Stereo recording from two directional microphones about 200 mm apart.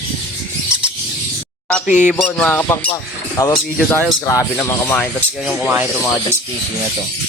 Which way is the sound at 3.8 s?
5° left (ahead or behind).